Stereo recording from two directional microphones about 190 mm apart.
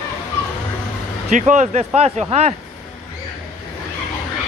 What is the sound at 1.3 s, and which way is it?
Speech, 40° right (ahead or behind).